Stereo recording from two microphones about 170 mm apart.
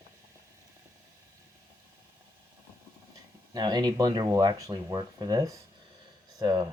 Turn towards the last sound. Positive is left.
turn(degrees=-20)  # may be behind; listen again after turning